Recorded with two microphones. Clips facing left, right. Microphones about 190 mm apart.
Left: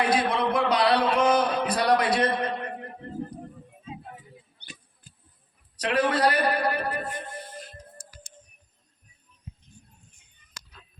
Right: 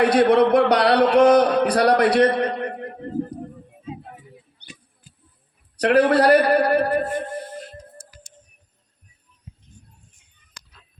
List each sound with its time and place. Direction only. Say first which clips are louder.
0.0 s speech: right 9 dB; 70° right (ahead or behind)
5.7 s a man's voice: right 9 dB; 65° right (ahead or behind)